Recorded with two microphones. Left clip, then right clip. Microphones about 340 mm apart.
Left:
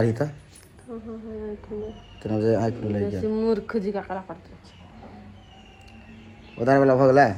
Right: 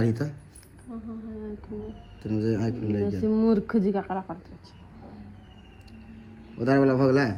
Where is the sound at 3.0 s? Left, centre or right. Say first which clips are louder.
Even; centre.